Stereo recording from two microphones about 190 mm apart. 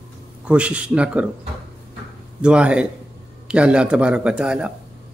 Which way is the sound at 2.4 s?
5° right (ahead or behind).